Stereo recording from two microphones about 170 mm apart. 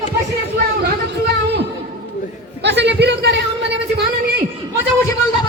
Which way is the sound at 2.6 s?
90° right.